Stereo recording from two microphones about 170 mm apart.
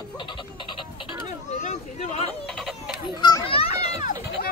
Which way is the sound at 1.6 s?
40° left (ahead or behind).